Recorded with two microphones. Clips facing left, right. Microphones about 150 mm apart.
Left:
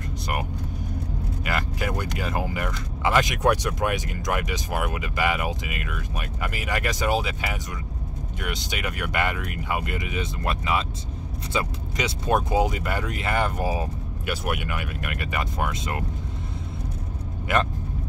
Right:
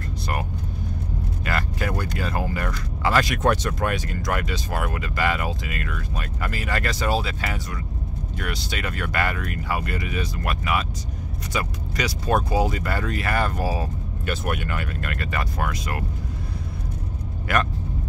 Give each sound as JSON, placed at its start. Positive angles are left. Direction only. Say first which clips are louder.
{"t": 1.4, "sound": "speech", "louder": "right 1 dB", "side_deg": 15}
{"t": 17.5, "sound": "speech", "louder": "even", "side_deg": 20}